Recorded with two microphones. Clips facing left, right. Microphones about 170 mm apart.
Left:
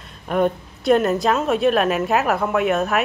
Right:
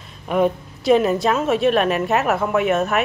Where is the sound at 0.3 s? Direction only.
Centre (ahead or behind).